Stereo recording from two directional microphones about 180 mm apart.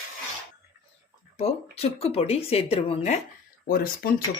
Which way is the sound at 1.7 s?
35° left (ahead or behind).